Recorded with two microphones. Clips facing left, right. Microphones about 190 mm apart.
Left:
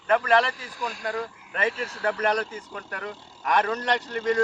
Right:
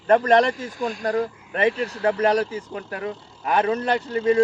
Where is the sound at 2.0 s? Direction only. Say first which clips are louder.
Right 5 dB; 30° right (ahead or behind).